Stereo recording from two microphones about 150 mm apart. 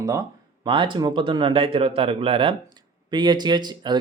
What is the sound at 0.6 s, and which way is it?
Speech, 35° right (ahead or behind).